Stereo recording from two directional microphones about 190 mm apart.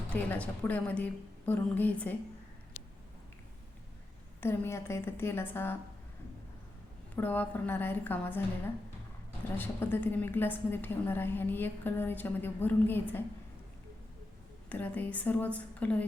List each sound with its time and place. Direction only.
0.1 s a woman's voice: 10° left (ahead or behind)
2.8 s a sound: 35° left (ahead or behind)
4.4 s a woman's voice: 10° left (ahead or behind)
7.2 s a woman's voice: 10° left (ahead or behind)
9.6 s a woman's voice: 10° left (ahead or behind)
14.7 s a woman's voice: 10° left (ahead or behind)